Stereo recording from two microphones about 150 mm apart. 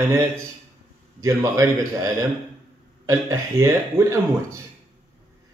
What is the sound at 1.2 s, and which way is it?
Speech, 20° right (ahead or behind).